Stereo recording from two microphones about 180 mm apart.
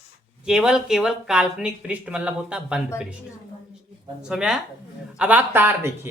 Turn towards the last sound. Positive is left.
turn(degrees=-10)  # may be behind; listen again after turning